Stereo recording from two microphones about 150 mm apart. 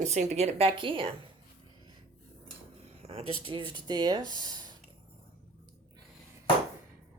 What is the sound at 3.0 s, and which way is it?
Speech, 40° right (ahead or behind).